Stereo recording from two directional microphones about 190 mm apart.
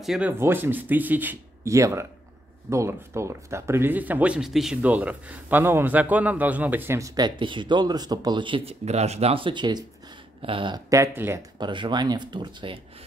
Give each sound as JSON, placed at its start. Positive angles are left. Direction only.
{"t": 0.0, "sound": "speech", "side_deg": 0}
{"t": 11.6, "sound": "speech", "side_deg": -25}